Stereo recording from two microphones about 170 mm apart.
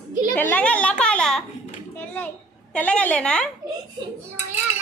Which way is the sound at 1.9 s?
10° left (ahead or behind).